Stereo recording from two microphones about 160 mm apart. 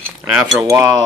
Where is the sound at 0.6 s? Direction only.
20° right (ahead or behind).